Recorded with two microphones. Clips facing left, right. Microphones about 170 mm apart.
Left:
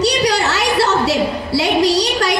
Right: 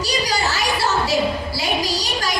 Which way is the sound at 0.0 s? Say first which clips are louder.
Left 7 dB; 70° left (ahead or behind).